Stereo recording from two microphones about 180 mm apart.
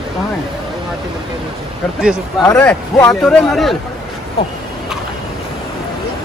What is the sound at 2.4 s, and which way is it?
Speech, 15° left (ahead or behind).